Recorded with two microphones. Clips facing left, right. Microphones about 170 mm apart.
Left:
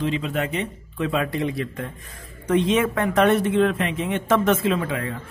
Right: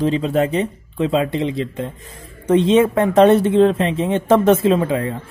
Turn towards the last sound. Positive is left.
turn(degrees=-30)  # may be behind; listen again after turning